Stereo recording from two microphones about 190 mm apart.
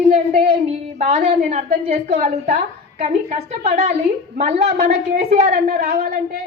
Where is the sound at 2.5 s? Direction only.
50° right (ahead or behind).